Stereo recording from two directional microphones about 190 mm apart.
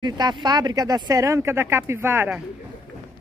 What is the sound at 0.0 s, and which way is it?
Speech, 20° right (ahead or behind).